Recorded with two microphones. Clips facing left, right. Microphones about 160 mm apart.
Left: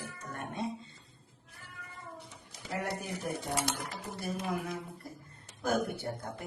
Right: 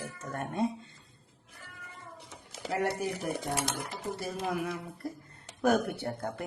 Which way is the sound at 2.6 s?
85° right.